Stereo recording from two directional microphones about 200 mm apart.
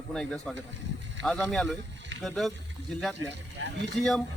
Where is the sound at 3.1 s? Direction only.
60° right (ahead or behind).